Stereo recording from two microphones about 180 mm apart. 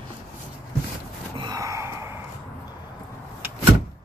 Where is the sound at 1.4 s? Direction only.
20° right (ahead or behind).